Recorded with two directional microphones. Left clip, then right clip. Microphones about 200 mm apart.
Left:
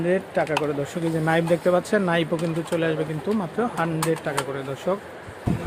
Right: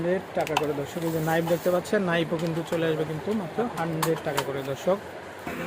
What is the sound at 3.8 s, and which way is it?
Speech, 20° left (ahead or behind).